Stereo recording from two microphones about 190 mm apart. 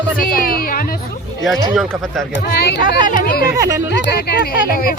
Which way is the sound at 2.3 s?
60° left (ahead or behind).